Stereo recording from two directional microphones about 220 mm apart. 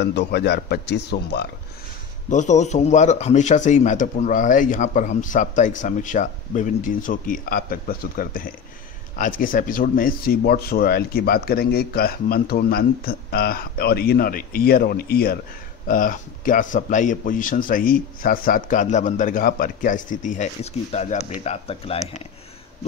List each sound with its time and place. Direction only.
0.0 s speech: 50° left (ahead or behind)
2.2 s speech: 35° left (ahead or behind)